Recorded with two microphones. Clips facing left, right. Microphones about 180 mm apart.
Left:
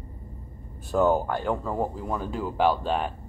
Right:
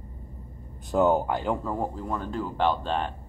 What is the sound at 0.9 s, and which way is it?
Speech, 20° right (ahead or behind).